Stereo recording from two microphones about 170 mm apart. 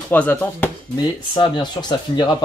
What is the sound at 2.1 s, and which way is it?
Speech, 25° left (ahead or behind).